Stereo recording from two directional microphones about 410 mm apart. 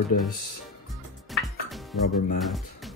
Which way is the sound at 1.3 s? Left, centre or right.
Centre.